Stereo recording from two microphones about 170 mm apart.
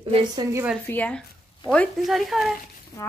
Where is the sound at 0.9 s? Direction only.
10° left (ahead or behind).